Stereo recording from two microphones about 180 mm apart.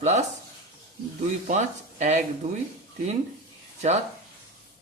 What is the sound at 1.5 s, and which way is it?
Speech, 40° right (ahead or behind).